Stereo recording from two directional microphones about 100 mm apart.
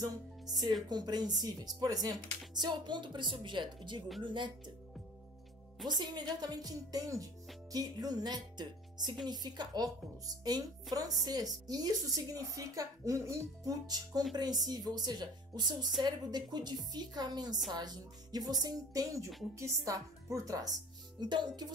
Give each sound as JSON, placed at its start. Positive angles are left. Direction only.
{"t": 0.0, "sound": "speech", "side_deg": -40}
{"t": 5.9, "sound": "speech", "side_deg": -45}
{"t": 7.7, "sound": "music", "side_deg": -40}
{"t": 9.3, "sound": "speech", "side_deg": -45}
{"t": 13.8, "sound": "speech", "side_deg": -40}
{"t": 21.2, "sound": "speech", "side_deg": -50}